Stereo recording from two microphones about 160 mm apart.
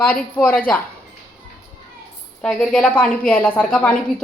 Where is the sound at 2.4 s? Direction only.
5° left (ahead or behind).